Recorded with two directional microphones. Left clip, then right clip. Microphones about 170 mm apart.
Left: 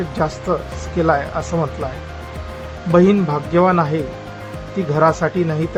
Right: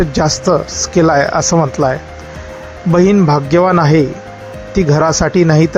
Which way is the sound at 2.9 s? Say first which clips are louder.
Right 4 dB; 40° right (ahead or behind).